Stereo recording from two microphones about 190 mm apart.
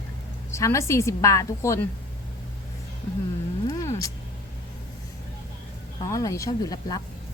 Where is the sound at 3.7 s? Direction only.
15° left (ahead or behind).